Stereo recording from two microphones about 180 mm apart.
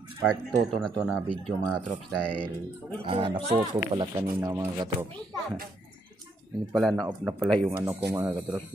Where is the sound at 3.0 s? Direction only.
25° right (ahead or behind).